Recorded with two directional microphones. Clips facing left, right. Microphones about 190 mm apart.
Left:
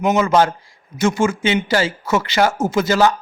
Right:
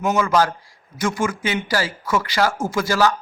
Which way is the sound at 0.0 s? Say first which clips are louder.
Left 3 dB; 20° left (ahead or behind).